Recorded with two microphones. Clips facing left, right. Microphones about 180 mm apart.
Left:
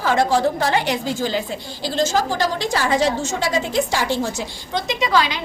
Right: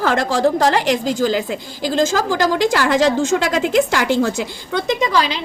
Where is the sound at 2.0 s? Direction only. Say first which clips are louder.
Right 3 dB; 90° right.